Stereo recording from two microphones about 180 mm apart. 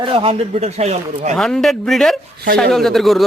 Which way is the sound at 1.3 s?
5° left (ahead or behind).